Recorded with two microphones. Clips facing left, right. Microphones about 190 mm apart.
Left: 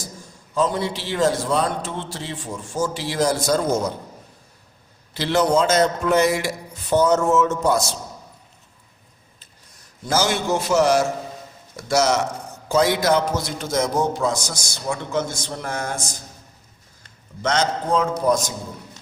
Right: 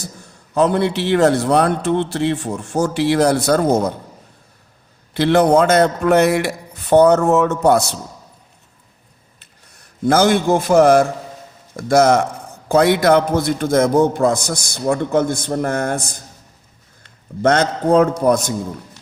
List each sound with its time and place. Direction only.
0.5 s a man's voice: 65° right (ahead or behind)
5.1 s a man's voice: 60° right (ahead or behind)
10.1 s a man's voice: 55° right (ahead or behind)
17.4 s a man's voice: 55° right (ahead or behind)